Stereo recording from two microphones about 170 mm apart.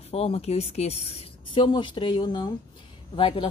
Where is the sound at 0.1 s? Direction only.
35° left (ahead or behind).